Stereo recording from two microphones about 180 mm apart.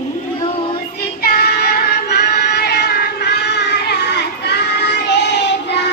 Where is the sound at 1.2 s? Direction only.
55° left (ahead or behind); by 5.9 s 70° left (ahead or behind).